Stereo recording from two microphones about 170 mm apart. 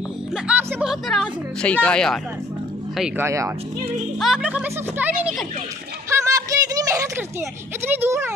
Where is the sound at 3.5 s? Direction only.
35° right (ahead or behind).